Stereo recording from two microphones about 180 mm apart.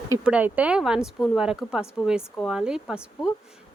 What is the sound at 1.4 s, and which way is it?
Speech, 5° right (ahead or behind).